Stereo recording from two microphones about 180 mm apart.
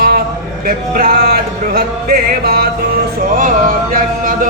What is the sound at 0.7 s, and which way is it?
Music, 55° right (ahead or behind).